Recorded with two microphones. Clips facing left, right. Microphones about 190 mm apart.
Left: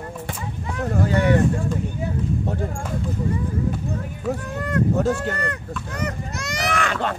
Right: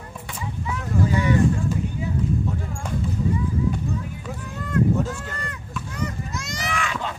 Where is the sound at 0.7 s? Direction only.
65° left (ahead or behind).